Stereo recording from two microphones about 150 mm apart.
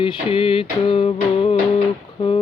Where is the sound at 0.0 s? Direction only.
35° left (ahead or behind).